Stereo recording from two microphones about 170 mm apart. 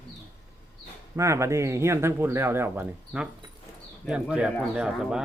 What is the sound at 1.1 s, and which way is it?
Speech, 15° right (ahead or behind).